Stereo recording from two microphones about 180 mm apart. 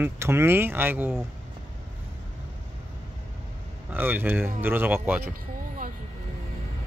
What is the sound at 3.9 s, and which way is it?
Speech, 10° right (ahead or behind).